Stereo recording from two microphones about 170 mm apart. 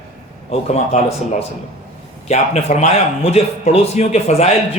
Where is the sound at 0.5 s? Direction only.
40° left (ahead or behind).